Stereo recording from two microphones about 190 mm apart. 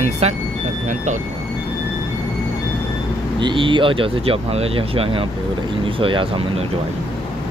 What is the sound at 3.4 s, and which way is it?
Speech, 25° right (ahead or behind).